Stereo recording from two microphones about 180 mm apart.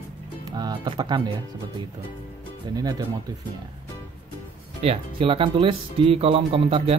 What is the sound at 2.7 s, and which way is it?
Speech, 20° right (ahead or behind).